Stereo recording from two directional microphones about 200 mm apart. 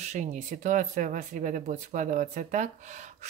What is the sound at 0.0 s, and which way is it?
Speech, 35° right (ahead or behind).